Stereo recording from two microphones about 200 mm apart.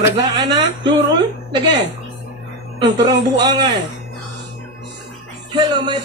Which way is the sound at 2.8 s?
20° right (ahead or behind).